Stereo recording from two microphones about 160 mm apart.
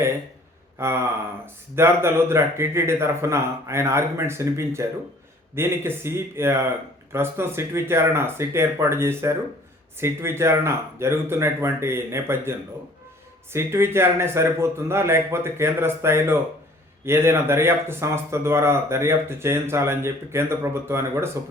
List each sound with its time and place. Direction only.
0.8 s speech: 15° right (ahead or behind)